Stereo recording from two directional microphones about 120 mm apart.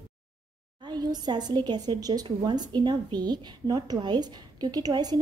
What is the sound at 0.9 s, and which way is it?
A woman's voice, 35° right (ahead or behind).